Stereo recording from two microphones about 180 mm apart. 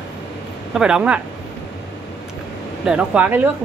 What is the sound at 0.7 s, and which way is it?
Speech, 5° right (ahead or behind).